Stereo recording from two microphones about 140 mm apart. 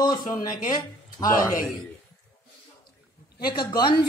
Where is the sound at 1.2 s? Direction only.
30° left (ahead or behind).